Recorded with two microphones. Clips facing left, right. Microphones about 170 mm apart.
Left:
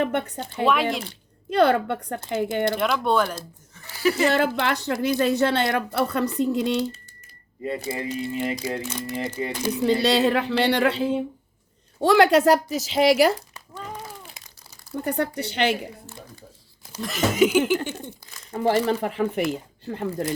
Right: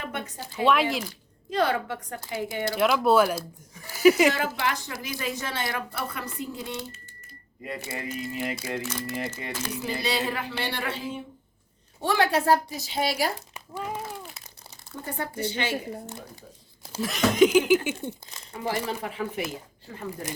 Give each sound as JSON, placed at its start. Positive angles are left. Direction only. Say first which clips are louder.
{"t": 0.0, "sound": "speech", "louder": "left 10 dB", "side_deg": 60}
{"t": 0.6, "sound": "speech", "louder": "left 1 dB", "side_deg": 0}
{"t": 1.5, "sound": "speech", "louder": "left 6 dB", "side_deg": 65}
{"t": 2.7, "sound": "speech", "louder": "right 6 dB", "side_deg": -5}
{"t": 4.4, "sound": "a woman's voice", "louder": "left 6 dB", "side_deg": 65}
{"t": 7.6, "sound": "speech", "louder": "left 6 dB", "side_deg": 30}
{"t": 8.8, "sound": "speech", "louder": "left 2 dB", "side_deg": 15}
{"t": 9.8, "sound": "a woman's voice", "louder": "left 10 dB", "side_deg": 70}
{"t": 13.5, "sound": "crumpling", "louder": "right 3 dB", "side_deg": -10}
{"t": 15.0, "sound": "a woman's voice", "louder": "left 5 dB", "side_deg": 70}
{"t": 17.0, "sound": "speech", "louder": "even", "side_deg": 0}
{"t": 18.5, "sound": "speech", "louder": "left 8 dB", "side_deg": 60}